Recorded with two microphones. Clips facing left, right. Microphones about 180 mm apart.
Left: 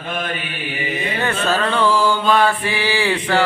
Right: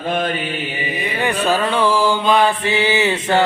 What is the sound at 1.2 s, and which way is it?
Mantra, 15° right (ahead or behind).